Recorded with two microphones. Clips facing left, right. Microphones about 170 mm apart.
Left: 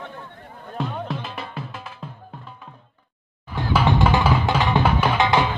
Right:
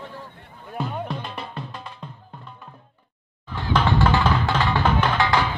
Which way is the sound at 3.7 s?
15° left (ahead or behind).